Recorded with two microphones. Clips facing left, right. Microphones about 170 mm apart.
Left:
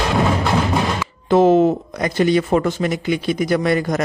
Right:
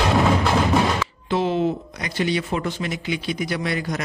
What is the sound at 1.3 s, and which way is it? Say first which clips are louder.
Speech: left 9 dB; 45° left (ahead or behind).